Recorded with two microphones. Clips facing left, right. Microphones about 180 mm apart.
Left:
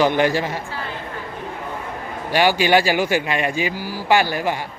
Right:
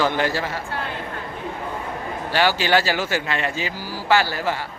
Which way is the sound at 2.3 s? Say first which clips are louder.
Left 3 dB; 15° left (ahead or behind).